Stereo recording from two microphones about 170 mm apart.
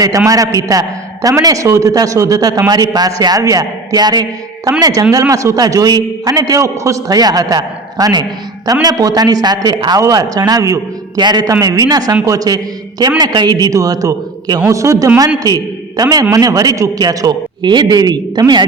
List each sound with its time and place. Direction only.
0.3 s a man's voice: 20° right (ahead or behind)